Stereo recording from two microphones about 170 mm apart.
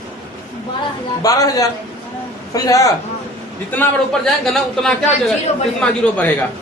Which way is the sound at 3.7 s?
5° left (ahead or behind).